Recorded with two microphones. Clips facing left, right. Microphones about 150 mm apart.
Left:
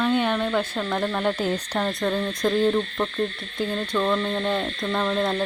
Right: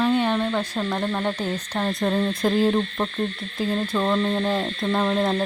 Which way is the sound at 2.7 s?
20° right (ahead or behind).